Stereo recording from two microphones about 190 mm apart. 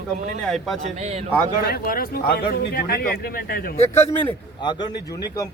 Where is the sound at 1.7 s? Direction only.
50° left (ahead or behind).